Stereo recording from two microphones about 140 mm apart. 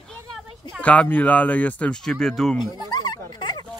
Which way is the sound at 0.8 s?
10° left (ahead or behind).